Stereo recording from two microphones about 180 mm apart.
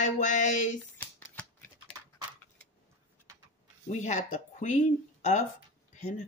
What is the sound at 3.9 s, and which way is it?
Speech, 40° left (ahead or behind).